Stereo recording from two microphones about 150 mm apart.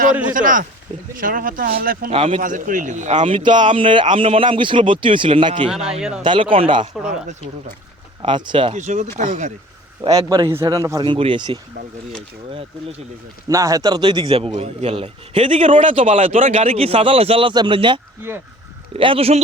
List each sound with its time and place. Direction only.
0.3 s speech: 60° right (ahead or behind)
2.1 s a man's voice: 35° right (ahead or behind)
2.4 s speech: 60° right (ahead or behind)
3.2 s a man's voice: 35° right (ahead or behind)
5.7 s speech: 5° right (ahead or behind)
6.2 s a man's voice: 35° right (ahead or behind)
7.0 s speech: 50° right (ahead or behind)
8.2 s a man's voice: 30° right (ahead or behind)
8.7 s speech: 50° right (ahead or behind)
10.2 s a man's voice: 25° right (ahead or behind)
11.0 s a man's voice: 35° right (ahead or behind)
13.5 s a man's voice: 20° right (ahead or behind); by 19.4 s 40° right (ahead or behind)